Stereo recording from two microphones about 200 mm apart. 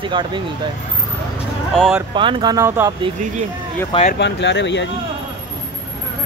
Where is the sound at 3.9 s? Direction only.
30° left (ahead or behind).